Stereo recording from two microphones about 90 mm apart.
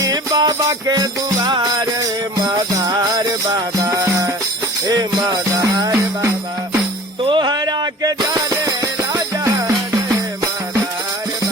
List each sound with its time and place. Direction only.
0.0 s music: 45° right (ahead or behind)
4.0 s music: 35° right (ahead or behind)
5.3 s music: 45° right (ahead or behind)
7.2 s music: 65° right (ahead or behind); by 9.5 s 40° right (ahead or behind)